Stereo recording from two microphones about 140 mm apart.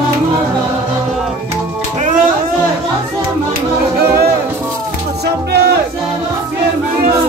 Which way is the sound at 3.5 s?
90° right.